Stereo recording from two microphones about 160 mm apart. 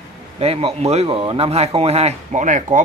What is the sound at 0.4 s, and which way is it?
A man's voice, 40° right (ahead or behind).